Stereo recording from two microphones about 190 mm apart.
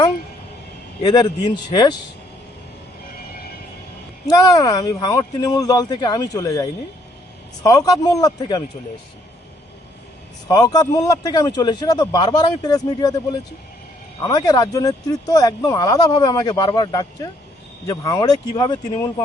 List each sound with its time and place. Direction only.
1.0 s speech: 20° left (ahead or behind)
4.3 s speech: 20° left (ahead or behind)
10.5 s speech: 20° left (ahead or behind)